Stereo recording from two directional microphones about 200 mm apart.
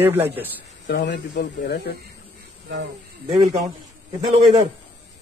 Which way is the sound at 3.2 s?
30° right (ahead or behind).